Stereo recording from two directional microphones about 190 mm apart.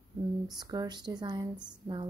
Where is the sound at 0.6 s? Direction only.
20° right (ahead or behind).